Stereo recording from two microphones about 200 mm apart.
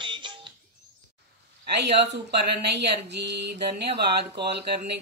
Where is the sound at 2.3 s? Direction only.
55° right (ahead or behind).